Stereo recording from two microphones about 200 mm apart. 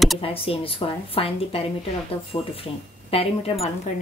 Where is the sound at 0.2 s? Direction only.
30° left (ahead or behind).